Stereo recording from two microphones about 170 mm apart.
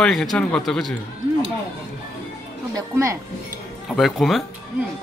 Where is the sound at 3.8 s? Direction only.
Centre (ahead or behind).